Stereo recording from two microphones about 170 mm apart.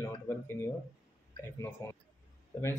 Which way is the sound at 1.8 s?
15° left (ahead or behind).